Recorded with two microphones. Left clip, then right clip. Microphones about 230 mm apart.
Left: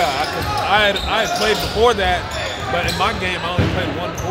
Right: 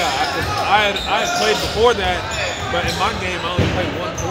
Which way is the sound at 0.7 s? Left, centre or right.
Left.